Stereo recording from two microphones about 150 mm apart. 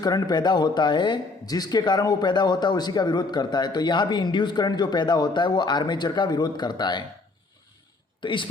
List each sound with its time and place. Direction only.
0.0 s a man's voice: 25° left (ahead or behind)
8.2 s a man's voice: 35° left (ahead or behind)